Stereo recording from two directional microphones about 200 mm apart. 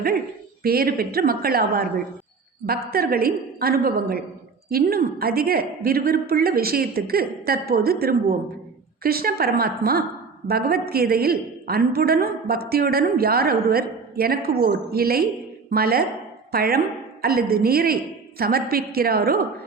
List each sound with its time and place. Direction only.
0.6 s a woman's voice: 50° right (ahead or behind)